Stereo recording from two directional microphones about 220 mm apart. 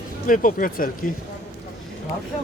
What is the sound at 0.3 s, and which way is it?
Speech, 40° left (ahead or behind).